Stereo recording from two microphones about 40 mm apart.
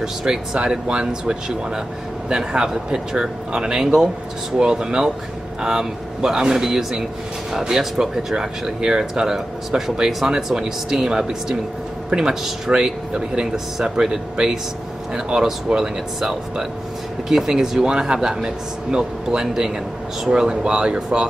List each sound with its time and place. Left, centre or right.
0.0 s speech: centre
0.6 s a man's voice: right